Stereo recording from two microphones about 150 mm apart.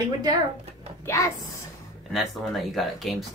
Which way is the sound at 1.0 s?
20° left (ahead or behind).